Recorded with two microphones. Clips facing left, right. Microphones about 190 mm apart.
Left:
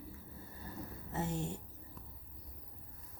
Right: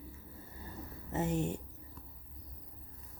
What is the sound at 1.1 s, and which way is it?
Speech, 20° right (ahead or behind).